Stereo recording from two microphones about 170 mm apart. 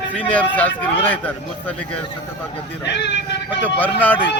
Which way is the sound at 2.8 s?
90° left.